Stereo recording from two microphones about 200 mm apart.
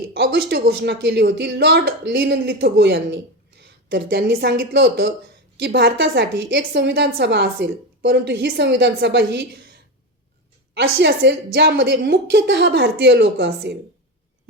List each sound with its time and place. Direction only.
0.1 s a woman's voice: 55° right (ahead or behind)
10.8 s a woman's voice: 60° right (ahead or behind)